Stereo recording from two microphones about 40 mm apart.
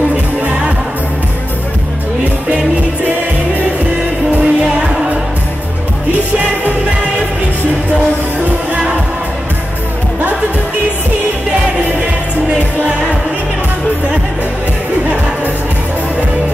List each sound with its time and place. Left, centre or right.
0.4 s music: right
4.4 s music: right